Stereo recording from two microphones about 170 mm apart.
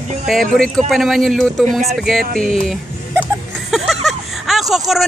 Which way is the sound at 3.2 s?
Centre (ahead or behind).